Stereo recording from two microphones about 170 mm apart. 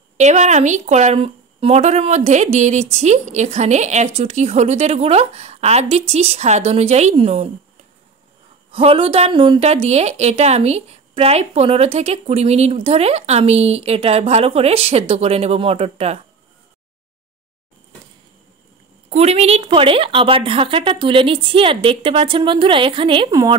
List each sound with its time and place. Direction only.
0.2 s a woman's voice: 45° right (ahead or behind)
8.7 s a woman's voice: 35° right (ahead or behind)
19.0 s a woman's voice: 40° right (ahead or behind)